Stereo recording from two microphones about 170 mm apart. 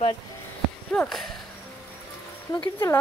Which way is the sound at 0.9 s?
Centre (ahead or behind).